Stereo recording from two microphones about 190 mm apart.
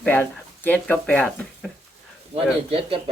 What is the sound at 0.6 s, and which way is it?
Speech, 5° left (ahead or behind).